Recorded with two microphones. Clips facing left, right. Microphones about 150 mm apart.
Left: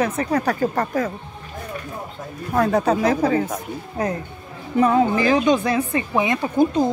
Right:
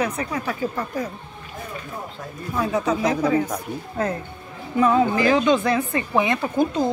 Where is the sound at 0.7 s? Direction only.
85° left.